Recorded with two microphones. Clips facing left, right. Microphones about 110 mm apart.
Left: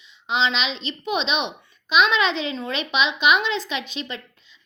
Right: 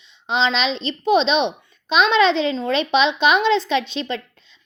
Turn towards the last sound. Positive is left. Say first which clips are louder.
# right 8 dB
turn(degrees=-35)  # may be behind; listen again after turning